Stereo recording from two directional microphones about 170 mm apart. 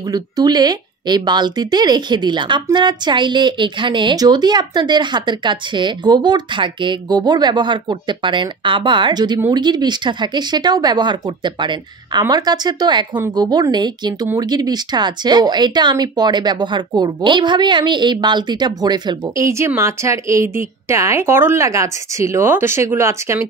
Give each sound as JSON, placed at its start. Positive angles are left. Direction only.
{"t": 0.1, "sound": "speech", "side_deg": -25}